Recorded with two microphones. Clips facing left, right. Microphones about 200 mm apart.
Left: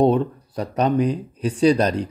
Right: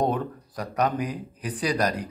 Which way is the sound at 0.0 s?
25° left (ahead or behind).